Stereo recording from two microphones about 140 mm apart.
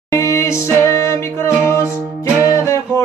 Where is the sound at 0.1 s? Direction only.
20° left (ahead or behind).